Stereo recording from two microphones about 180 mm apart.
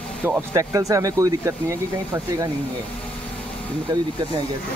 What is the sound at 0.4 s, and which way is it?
Speech, 15° right (ahead or behind).